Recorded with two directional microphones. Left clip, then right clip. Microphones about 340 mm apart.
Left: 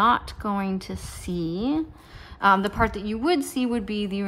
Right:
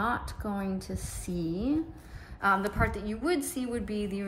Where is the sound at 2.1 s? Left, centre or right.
Centre.